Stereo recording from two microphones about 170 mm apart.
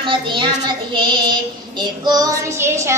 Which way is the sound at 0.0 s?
30° right (ahead or behind).